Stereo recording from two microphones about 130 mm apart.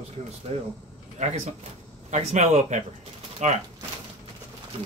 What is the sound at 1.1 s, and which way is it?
Speech, 65° right (ahead or behind).